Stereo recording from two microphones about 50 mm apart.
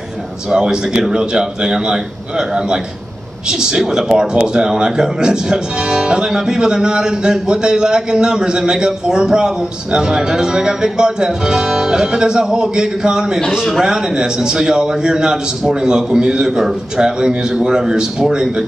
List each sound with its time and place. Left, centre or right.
0.5 s a man's voice: centre